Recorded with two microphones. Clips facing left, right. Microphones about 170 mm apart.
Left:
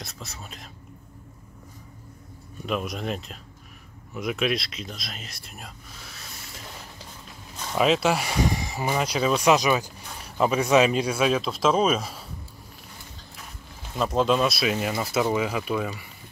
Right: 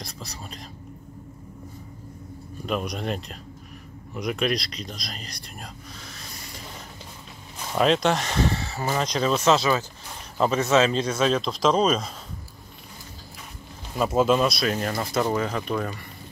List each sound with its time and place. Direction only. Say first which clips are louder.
0.0 s speech: right 2 dB; centre (ahead or behind)
2.6 s speech: right 1 dB; centre (ahead or behind)
7.7 s speech: right 1 dB; 5° left (ahead or behind)
13.9 s speech: right 2 dB; 5° right (ahead or behind)